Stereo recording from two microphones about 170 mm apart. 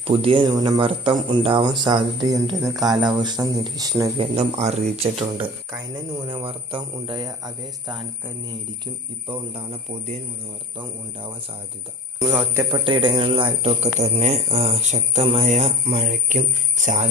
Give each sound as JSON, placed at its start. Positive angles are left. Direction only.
{"t": 0.1, "sound": "speech", "side_deg": -30}
{"t": 4.2, "sound": "speech", "side_deg": -40}
{"t": 5.7, "sound": "speech", "side_deg": -25}
{"t": 9.2, "sound": "speech", "side_deg": -30}
{"t": 12.2, "sound": "speech", "side_deg": -15}
{"t": 12.7, "sound": "speech", "side_deg": -30}